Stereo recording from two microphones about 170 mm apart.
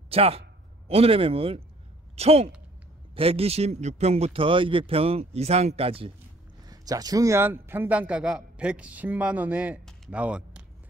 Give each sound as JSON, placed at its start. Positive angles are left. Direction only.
{"t": 0.1, "sound": "a man's voice", "side_deg": -35}
{"t": 6.6, "sound": "a man's voice", "side_deg": -20}